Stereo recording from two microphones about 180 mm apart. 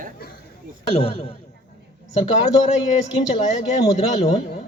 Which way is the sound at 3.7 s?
40° left (ahead or behind).